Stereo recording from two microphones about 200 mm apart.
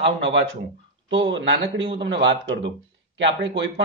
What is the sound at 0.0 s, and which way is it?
A man's voice, 65° right (ahead or behind).